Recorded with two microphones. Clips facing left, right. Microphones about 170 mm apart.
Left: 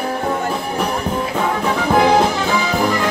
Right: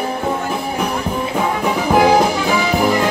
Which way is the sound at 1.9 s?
10° right (ahead or behind).